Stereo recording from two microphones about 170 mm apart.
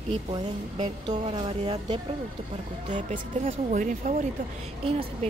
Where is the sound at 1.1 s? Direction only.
30° right (ahead or behind).